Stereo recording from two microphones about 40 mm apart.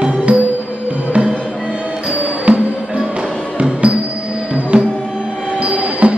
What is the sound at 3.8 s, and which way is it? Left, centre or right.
Music, right.